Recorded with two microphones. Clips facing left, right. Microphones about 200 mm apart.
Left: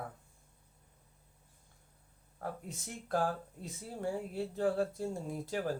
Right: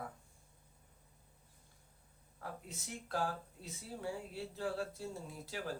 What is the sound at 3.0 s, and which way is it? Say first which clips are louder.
Speech: left 5 dB; 50° left (ahead or behind).